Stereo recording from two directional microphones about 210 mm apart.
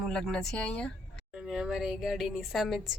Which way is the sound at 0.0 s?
5° left (ahead or behind).